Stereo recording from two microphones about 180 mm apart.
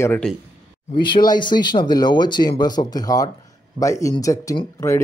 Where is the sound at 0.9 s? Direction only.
25° left (ahead or behind).